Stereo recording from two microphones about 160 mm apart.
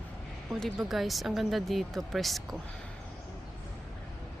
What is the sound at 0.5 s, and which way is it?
Speech, centre (ahead or behind).